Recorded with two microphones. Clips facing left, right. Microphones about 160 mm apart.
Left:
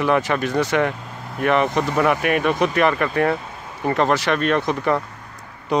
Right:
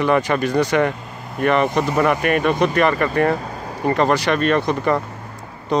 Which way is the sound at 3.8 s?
Centre (ahead or behind).